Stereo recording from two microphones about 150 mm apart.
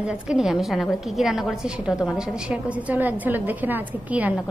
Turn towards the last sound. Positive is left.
turn(degrees=-10)  # may be behind; listen again after turning